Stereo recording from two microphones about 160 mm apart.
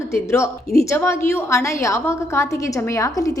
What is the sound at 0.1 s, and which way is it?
A woman's voice, 15° left (ahead or behind).